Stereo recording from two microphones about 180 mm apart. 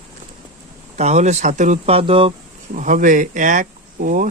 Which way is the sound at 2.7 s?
45° right (ahead or behind).